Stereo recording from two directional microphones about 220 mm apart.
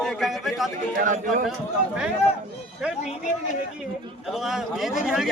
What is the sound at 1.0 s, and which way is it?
Speech, 35° right (ahead or behind).